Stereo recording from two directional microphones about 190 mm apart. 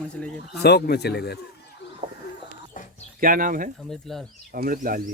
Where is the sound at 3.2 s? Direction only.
45° right (ahead or behind).